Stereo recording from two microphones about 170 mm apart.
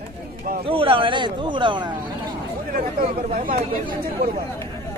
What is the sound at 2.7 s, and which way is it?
Speech, 55° right (ahead or behind).